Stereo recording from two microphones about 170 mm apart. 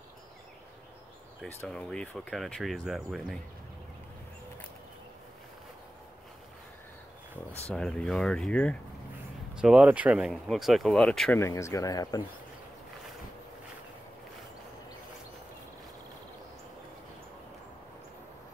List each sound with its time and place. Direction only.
1.4 s speech: 10° left (ahead or behind)
7.7 s speech: 5° left (ahead or behind)
9.6 s speech: 5° right (ahead or behind)
11.3 s speech: 15° left (ahead or behind)